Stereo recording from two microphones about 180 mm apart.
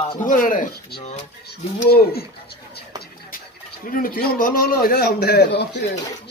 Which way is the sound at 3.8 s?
50° left (ahead or behind).